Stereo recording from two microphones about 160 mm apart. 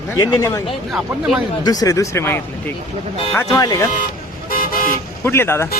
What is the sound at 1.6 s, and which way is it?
Speech, 25° left (ahead or behind).